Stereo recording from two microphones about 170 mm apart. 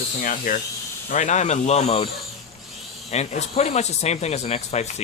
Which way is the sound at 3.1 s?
40° left (ahead or behind).